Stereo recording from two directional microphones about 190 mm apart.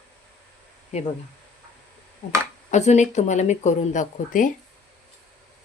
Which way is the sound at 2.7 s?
35° left (ahead or behind).